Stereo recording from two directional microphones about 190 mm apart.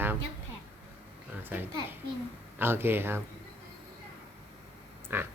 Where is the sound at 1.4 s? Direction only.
10° right (ahead or behind).